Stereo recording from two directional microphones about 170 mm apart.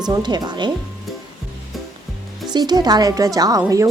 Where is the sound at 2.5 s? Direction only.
25° right (ahead or behind).